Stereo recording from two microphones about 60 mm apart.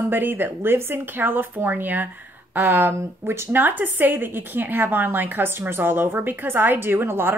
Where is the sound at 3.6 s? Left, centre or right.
Right.